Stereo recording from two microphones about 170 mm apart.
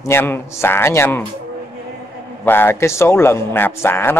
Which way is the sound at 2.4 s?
15° left (ahead or behind).